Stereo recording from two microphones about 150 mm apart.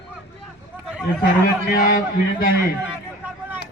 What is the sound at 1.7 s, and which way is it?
Speech, 70° left (ahead or behind).